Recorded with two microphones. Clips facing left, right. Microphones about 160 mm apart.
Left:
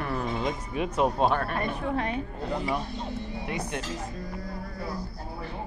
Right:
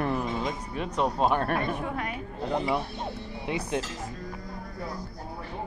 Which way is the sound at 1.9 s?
30° left (ahead or behind).